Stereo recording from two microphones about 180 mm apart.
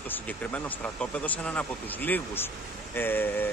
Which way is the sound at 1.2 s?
10° left (ahead or behind).